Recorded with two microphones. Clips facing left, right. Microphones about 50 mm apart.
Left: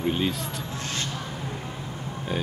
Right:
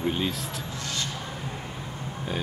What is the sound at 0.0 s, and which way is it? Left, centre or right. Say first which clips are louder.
Speech: left 2 dB; centre.